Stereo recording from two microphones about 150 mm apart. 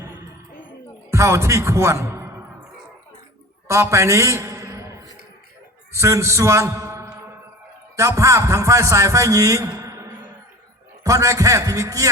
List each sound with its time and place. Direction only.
1.1 s music: 20° right (ahead or behind)
3.7 s a man's voice: 20° right (ahead or behind)
5.9 s a man's voice: 20° right (ahead or behind)